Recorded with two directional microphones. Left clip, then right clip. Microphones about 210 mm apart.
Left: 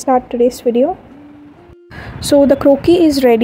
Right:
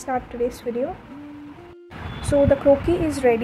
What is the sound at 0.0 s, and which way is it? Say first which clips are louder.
Speech: left 12 dB; 35° left (ahead or behind).